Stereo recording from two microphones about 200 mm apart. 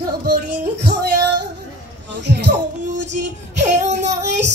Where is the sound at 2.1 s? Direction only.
60° right (ahead or behind).